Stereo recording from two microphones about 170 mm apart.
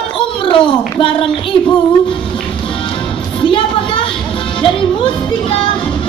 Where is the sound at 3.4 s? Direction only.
30° left (ahead or behind).